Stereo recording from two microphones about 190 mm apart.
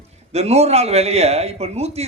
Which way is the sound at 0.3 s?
35° right (ahead or behind).